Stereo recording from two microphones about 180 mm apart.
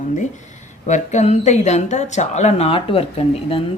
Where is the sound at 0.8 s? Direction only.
40° left (ahead or behind).